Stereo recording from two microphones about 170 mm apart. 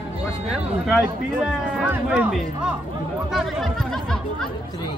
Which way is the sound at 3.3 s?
Centre (ahead or behind).